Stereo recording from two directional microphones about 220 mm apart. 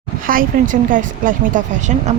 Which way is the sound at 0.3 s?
40° right (ahead or behind).